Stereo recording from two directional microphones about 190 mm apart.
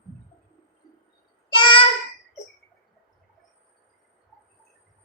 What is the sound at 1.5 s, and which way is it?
Child singing, 25° left (ahead or behind).